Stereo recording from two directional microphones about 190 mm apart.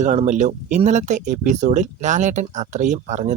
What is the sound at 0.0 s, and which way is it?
Speech, 40° right (ahead or behind).